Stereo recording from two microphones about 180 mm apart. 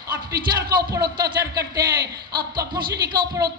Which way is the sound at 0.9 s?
20° right (ahead or behind).